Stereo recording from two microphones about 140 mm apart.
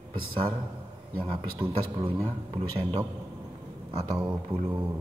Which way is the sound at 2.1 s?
40° right (ahead or behind).